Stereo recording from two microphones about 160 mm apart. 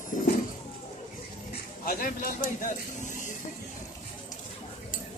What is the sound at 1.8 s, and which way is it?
Speech, 65° left (ahead or behind).